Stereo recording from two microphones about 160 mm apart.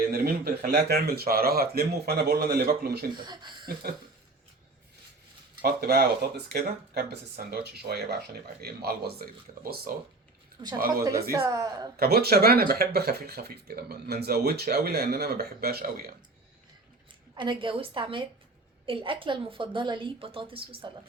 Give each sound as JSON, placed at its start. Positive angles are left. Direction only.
{"t": 0.0, "sound": "speech", "side_deg": -75}
{"t": 3.2, "sound": "speech", "side_deg": -30}
{"t": 5.6, "sound": "speech", "side_deg": -75}
{"t": 8.6, "sound": "speech", "side_deg": -75}
{"t": 11.0, "sound": "speech", "side_deg": -20}
{"t": 11.9, "sound": "speech", "side_deg": -80}
{"t": 17.3, "sound": "a woman's voice", "side_deg": -30}